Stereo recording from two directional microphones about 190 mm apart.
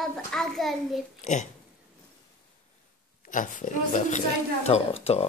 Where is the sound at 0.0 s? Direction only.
Centre (ahead or behind).